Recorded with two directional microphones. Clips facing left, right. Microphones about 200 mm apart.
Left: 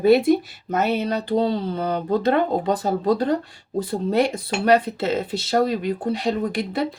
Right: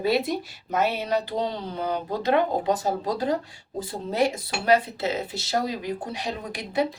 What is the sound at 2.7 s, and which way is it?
Speech, 60° left (ahead or behind).